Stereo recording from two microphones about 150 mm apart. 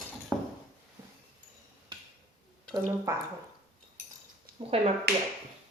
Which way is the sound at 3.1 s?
20° right (ahead or behind).